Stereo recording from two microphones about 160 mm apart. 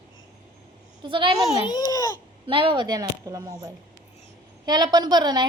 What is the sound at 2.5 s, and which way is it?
A woman's voice, 30° right (ahead or behind).